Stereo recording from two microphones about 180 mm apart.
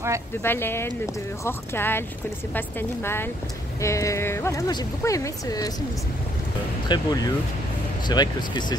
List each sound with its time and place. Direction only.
0.4 s speech: 10° left (ahead or behind)
6.9 s speech: 25° left (ahead or behind)